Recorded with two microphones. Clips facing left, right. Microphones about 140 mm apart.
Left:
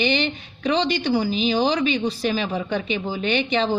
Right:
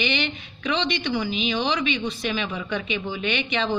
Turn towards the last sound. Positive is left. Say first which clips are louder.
# left 4 dB
turn(degrees=35)  # may be behind; listen again after turning